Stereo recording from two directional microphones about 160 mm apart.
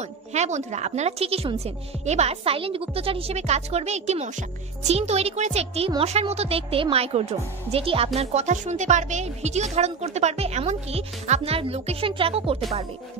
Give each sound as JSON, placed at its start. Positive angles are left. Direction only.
{"t": 0.0, "sound": "a woman's voice", "side_deg": -45}